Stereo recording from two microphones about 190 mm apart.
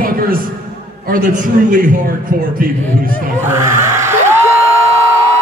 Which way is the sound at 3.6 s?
15° right (ahead or behind).